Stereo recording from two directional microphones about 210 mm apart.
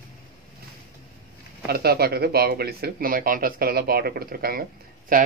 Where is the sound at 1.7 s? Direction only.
50° right (ahead or behind).